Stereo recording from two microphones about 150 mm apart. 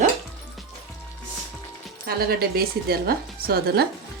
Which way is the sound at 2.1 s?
90° right.